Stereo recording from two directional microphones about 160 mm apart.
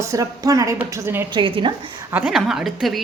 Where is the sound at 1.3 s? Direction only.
30° right (ahead or behind).